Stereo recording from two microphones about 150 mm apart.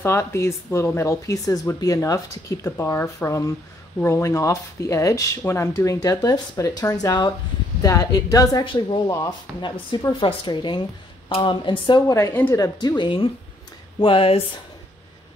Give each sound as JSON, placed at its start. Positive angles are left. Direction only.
{"t": 0.0, "sound": "speech", "side_deg": 15}
{"t": 12.1, "sound": "speech", "side_deg": 15}